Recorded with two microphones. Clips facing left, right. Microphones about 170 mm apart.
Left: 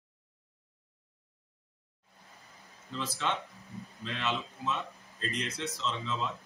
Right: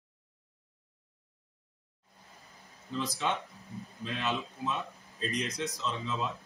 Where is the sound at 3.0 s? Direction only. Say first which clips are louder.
Right 1 dB; 15° right (ahead or behind).